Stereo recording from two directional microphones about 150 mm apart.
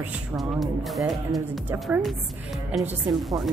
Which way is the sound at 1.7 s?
10° right (ahead or behind).